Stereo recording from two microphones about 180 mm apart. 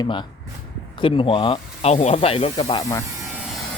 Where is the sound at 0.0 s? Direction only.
25° left (ahead or behind).